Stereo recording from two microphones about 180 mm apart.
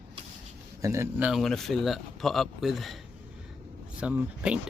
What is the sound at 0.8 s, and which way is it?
Speech, 15° right (ahead or behind).